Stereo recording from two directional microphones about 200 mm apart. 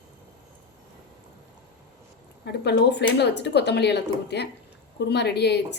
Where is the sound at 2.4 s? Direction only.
55° left (ahead or behind).